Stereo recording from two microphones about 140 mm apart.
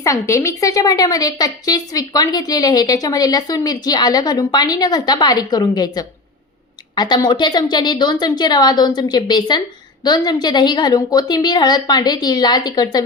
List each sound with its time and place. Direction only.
0.0 s a woman's voice: 20° left (ahead or behind)